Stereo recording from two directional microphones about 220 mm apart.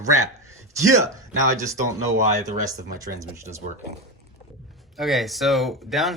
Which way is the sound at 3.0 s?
15° right (ahead or behind).